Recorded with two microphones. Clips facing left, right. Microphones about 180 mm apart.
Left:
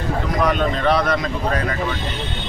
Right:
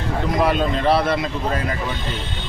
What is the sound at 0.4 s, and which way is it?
Speech, 30° right (ahead or behind).